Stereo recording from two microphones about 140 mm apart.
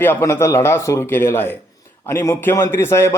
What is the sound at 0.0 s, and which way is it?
A man's voice, 15° left (ahead or behind).